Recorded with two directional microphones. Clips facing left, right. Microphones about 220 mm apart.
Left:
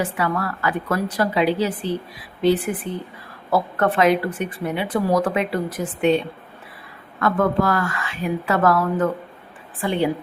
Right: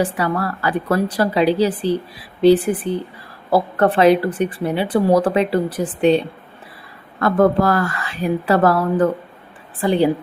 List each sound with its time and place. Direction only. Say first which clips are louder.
0.0 s speech: right 3 dB; 35° right (ahead or behind)